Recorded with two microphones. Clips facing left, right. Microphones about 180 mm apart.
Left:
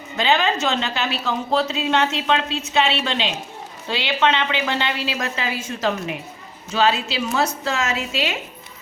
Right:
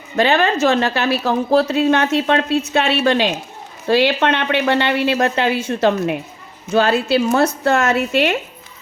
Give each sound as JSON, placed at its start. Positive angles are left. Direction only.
{"t": 0.2, "sound": "a woman's voice", "side_deg": -55}